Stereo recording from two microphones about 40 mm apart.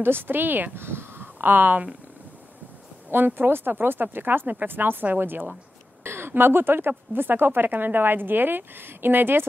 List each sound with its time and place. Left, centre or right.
0.0 s a woman's voice: right
0.7 s speech: right
3.1 s a woman's voice: right
6.0 s a woman's voice: right